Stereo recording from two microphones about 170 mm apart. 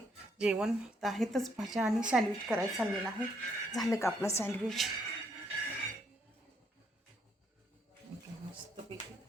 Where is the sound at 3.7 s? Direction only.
20° left (ahead or behind).